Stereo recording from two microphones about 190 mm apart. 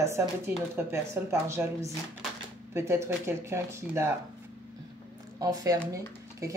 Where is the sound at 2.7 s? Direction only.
15° right (ahead or behind).